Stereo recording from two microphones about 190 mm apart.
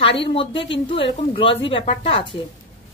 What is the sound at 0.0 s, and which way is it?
A woman's voice, 30° left (ahead or behind).